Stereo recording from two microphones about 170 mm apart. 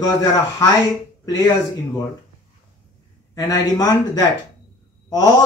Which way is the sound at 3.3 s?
20° left (ahead or behind).